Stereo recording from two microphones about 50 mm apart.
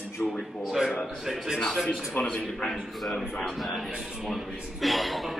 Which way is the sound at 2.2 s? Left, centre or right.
Centre.